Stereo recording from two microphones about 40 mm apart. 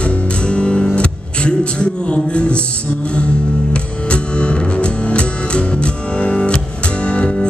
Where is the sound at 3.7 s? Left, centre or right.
Left.